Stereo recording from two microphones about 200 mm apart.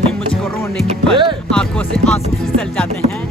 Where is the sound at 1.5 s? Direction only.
5° left (ahead or behind).